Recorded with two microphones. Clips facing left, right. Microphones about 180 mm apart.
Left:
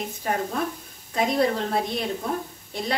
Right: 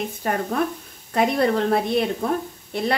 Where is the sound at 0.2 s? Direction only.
55° right (ahead or behind).